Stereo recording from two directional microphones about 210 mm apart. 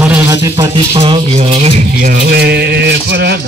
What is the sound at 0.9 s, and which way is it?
Speech, 25° right (ahead or behind).